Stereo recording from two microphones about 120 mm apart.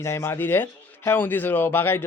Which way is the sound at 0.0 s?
20° left (ahead or behind).